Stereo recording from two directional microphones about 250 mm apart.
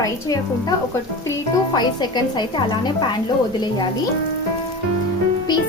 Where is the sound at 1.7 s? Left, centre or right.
Centre.